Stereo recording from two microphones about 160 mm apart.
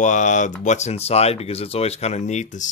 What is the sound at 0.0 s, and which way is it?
Speech, 50° left (ahead or behind).